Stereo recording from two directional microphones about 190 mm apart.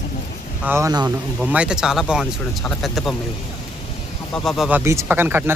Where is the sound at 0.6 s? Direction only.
15° right (ahead or behind).